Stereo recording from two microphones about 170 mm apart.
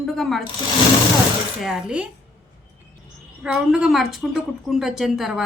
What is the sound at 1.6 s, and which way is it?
Speech, 5° right (ahead or behind).